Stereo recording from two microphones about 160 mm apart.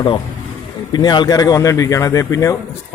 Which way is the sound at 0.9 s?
25° left (ahead or behind).